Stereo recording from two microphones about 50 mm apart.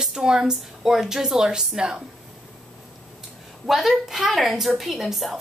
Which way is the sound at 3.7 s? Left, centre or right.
Centre.